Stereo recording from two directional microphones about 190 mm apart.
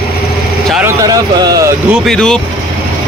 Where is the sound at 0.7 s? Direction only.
10° right (ahead or behind).